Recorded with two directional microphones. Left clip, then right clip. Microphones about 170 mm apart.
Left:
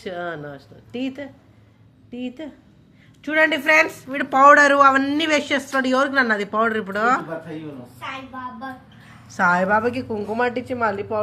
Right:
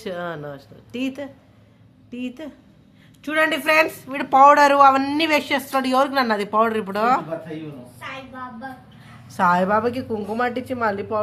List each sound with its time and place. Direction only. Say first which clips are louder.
0.0 s a woman's voice: even; 20° right (ahead or behind)
9.3 s speech: even; 15° right (ahead or behind)